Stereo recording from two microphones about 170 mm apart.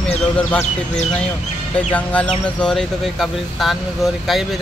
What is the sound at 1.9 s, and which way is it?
Speech, 10° left (ahead or behind).